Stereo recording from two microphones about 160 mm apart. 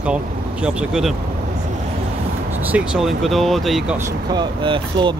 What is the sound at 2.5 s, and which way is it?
Speech, 10° right (ahead or behind).